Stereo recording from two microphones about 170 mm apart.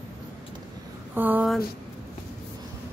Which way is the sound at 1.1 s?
10° right (ahead or behind).